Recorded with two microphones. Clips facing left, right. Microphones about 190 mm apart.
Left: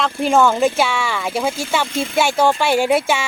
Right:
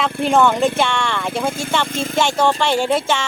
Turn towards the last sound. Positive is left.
turn(degrees=10)  # may be behind; listen again after turning